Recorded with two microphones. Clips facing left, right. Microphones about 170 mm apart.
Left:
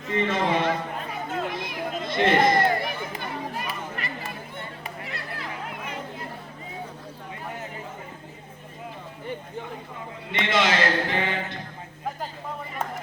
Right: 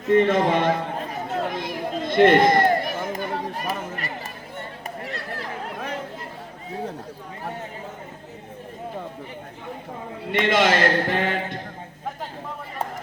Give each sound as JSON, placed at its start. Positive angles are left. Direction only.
{"t": 0.1, "sound": "a man's voice", "side_deg": -50}
{"t": 1.4, "sound": "run", "side_deg": -45}
{"t": 2.7, "sound": "chatter", "side_deg": -45}
{"t": 10.3, "sound": "music", "side_deg": -50}